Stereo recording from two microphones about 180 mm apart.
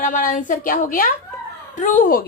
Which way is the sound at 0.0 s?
45° left (ahead or behind).